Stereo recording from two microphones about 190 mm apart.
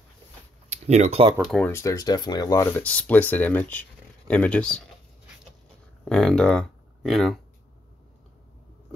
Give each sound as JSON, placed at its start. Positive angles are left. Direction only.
{"t": 0.7, "sound": "speech", "side_deg": -35}
{"t": 1.3, "sound": "speech", "side_deg": 0}
{"t": 1.7, "sound": "speech", "side_deg": 15}
{"t": 6.0, "sound": "speech", "side_deg": 5}